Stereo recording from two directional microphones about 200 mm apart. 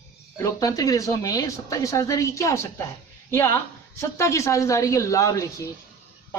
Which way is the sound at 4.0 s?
15° left (ahead or behind).